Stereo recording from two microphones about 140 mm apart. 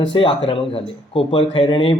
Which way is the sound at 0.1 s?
40° left (ahead or behind).